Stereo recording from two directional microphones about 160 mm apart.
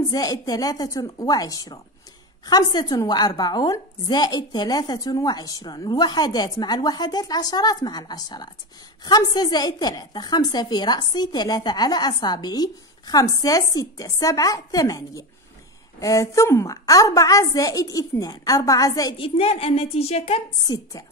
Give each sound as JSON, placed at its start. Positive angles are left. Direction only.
{"t": 0.1, "sound": "a woman's voice", "side_deg": 25}
{"t": 20.6, "sound": "a woman's voice", "side_deg": 20}